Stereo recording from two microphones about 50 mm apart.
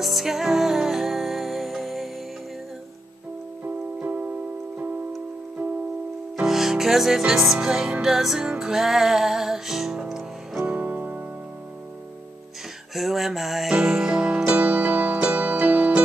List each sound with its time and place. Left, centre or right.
0.0 s music: centre
3.6 s music: right
6.4 s music: centre
10.6 s music: right
12.9 s music: centre; by 16.0 s right